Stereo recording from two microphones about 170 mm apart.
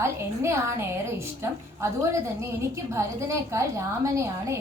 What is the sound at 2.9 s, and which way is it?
A woman's voice, 15° right (ahead or behind).